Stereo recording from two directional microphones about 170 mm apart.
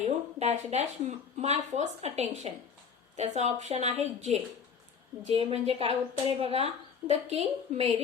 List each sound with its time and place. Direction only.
0.0 s speech: 40° right (ahead or behind)